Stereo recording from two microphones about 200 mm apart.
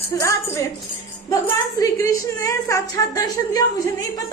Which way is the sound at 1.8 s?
15° left (ahead or behind).